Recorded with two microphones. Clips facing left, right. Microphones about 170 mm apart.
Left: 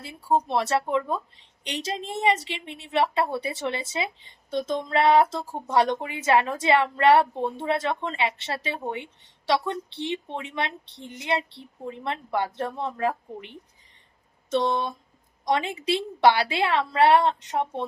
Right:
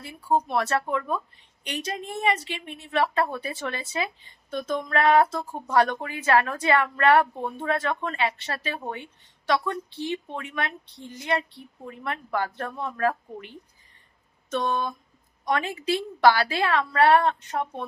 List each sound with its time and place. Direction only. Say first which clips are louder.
0.0 s speech: even; 25° left (ahead or behind)